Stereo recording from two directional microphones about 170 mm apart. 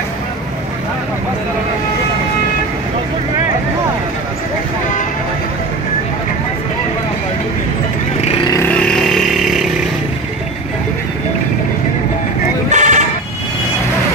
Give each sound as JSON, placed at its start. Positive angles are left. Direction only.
{"t": 8.5, "sound": "vehicle", "side_deg": 10}
{"t": 12.6, "sound": "sheep", "side_deg": -45}